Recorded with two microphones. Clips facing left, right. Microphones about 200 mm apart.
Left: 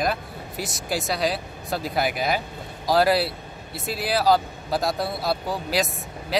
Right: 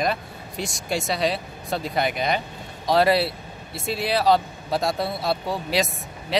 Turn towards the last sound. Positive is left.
turn(degrees=0)  # may be behind; listen again after turning